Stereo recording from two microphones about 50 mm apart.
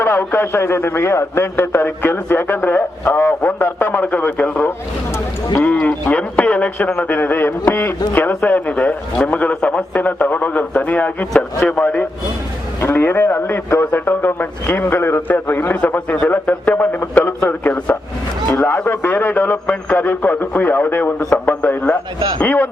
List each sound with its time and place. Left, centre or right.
0.0 s a man's voice: left
6.9 s a man's voice: left
12.8 s a man's voice: left
21.2 s a man's voice: left
21.4 s speech: left